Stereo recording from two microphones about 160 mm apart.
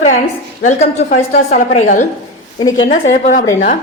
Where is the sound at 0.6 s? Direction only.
45° left (ahead or behind).